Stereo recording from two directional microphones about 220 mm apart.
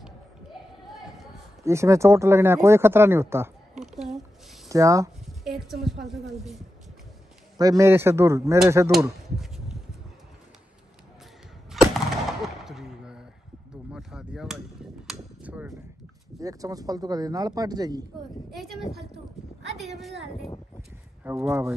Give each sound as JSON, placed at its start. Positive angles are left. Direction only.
{"t": 1.6, "sound": "speech", "side_deg": -15}
{"t": 3.7, "sound": "a sound", "side_deg": 0}
{"t": 4.6, "sound": "speech", "side_deg": -15}
{"t": 5.2, "sound": "a sound", "side_deg": 0}
{"t": 5.9, "sound": "speech", "side_deg": 0}
{"t": 7.5, "sound": "speech", "side_deg": -15}
{"t": 11.7, "sound": "a sound", "side_deg": 0}
{"t": 13.9, "sound": "chop", "side_deg": 0}
{"t": 15.0, "sound": "cap gun", "side_deg": -5}
{"t": 16.3, "sound": "speech", "side_deg": -15}
{"t": 18.5, "sound": "a sound", "side_deg": 0}
{"t": 21.2, "sound": "speech", "side_deg": -10}